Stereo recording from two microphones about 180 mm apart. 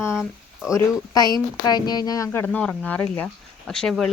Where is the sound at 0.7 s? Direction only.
20° left (ahead or behind).